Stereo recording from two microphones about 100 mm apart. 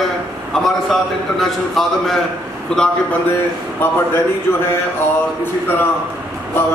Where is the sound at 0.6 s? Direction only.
Centre (ahead or behind).